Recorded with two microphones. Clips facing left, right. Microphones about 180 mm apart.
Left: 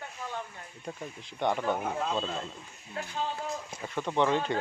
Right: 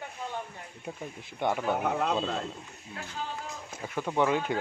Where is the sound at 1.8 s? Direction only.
65° right (ahead or behind).